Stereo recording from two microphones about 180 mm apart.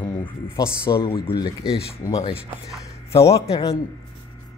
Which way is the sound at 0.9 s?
30° left (ahead or behind).